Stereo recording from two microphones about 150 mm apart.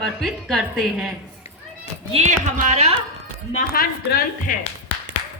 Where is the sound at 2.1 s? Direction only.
50° right (ahead or behind).